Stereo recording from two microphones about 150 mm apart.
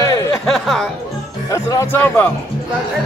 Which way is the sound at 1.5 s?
20° left (ahead or behind).